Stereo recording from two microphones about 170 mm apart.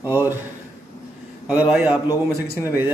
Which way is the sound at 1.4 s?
5° right (ahead or behind).